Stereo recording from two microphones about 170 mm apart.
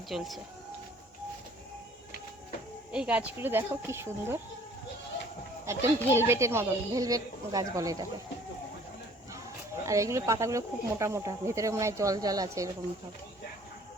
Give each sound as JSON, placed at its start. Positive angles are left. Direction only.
{"t": 0.1, "sound": "speech", "side_deg": -5}
{"t": 2.9, "sound": "speech", "side_deg": -5}
{"t": 5.6, "sound": "speech", "side_deg": -15}
{"t": 9.8, "sound": "speech", "side_deg": -20}